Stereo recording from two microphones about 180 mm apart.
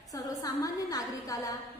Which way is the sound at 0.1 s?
20° left (ahead or behind).